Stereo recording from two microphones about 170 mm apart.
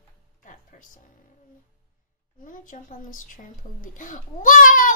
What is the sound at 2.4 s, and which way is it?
Speech, 50° left (ahead or behind).